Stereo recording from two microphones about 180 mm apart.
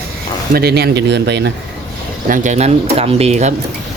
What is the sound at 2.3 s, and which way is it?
Speech, 45° right (ahead or behind).